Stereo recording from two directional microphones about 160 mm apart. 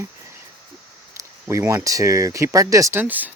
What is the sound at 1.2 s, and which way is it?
Speech, 20° right (ahead or behind).